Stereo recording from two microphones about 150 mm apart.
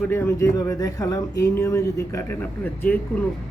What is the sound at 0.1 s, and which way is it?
Speech, 20° left (ahead or behind).